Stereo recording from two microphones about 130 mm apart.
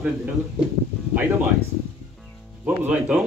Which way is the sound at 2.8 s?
5° right (ahead or behind).